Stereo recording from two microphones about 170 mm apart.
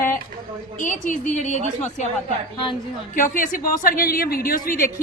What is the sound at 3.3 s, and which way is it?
A woman's voice, 55° left (ahead or behind).